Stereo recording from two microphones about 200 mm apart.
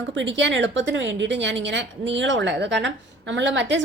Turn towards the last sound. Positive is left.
turn(degrees=-65)  # may be behind; listen again after turning